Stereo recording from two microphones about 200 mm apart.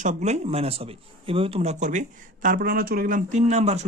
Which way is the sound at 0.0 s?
35° right (ahead or behind).